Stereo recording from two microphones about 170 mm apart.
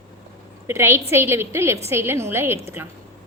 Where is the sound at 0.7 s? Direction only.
15° right (ahead or behind).